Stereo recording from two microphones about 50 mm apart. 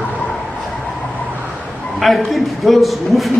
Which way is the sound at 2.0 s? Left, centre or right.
Centre.